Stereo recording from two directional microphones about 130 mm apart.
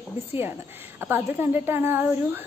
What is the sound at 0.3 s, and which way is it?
A woman's voice, 15° right (ahead or behind).